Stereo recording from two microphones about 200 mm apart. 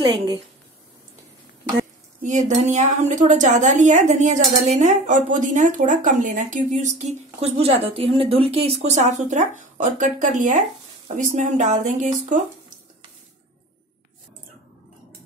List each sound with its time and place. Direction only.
0.0 s a woman's voice: 25° right (ahead or behind)
2.2 s a woman's voice: 40° right (ahead or behind)